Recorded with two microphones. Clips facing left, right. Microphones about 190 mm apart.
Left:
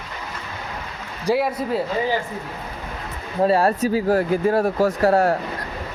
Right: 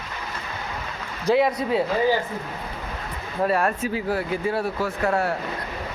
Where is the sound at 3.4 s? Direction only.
30° left (ahead or behind).